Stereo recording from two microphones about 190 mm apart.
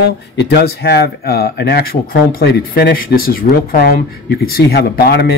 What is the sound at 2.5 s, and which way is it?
Speech, 60° left (ahead or behind).